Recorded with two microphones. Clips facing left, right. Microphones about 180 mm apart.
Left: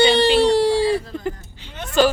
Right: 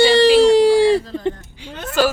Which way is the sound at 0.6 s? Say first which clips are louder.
Right 5 dB; 90° right.